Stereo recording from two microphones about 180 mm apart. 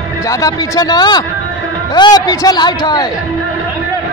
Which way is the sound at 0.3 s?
20° left (ahead or behind).